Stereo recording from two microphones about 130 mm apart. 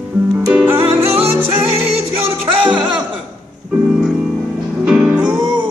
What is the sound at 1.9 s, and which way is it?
Music, 45° right (ahead or behind).